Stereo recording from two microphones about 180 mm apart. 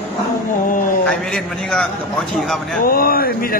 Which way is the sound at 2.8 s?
55° left (ahead or behind).